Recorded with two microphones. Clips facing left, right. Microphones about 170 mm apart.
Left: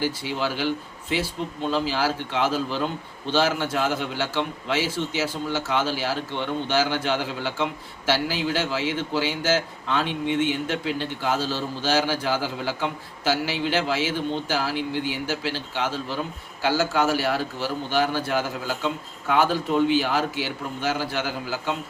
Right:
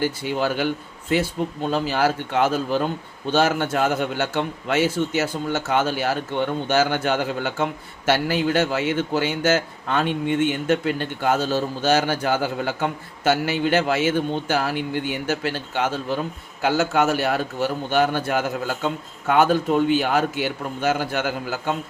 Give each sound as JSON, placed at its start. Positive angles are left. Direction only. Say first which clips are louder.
{"t": 0.3, "sound": "a man's voice", "louder": "right 4 dB", "side_deg": -50}
{"t": 1.7, "sound": "a man's voice", "louder": "right 3 dB", "side_deg": -50}